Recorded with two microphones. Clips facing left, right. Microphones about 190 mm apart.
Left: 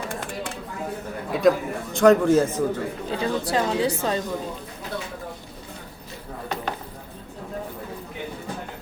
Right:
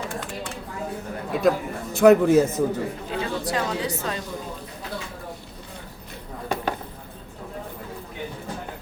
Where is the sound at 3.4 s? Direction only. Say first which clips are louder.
Left 4 dB; 30° left (ahead or behind).